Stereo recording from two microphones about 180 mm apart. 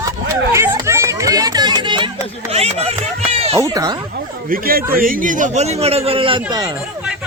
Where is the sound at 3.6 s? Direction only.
20° right (ahead or behind).